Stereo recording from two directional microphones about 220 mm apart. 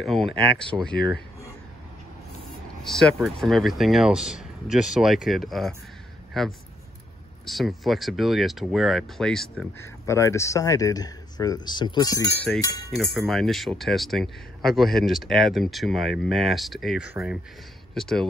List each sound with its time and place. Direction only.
0.0 s speech: centre (ahead or behind)
2.8 s speech: centre (ahead or behind)
10.0 s speech: 15° left (ahead or behind)
12.5 s speech: 5° left (ahead or behind)